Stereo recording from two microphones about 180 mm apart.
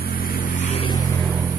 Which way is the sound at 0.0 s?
55° left (ahead or behind).